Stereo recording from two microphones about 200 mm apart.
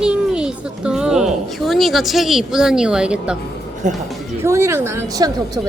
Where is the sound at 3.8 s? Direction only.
40° right (ahead or behind).